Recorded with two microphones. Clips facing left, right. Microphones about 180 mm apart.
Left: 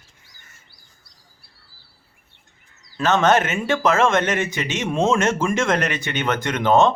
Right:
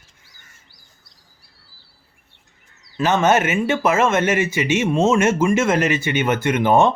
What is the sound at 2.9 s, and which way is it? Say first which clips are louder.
Speech: right 1 dB; 10° right (ahead or behind).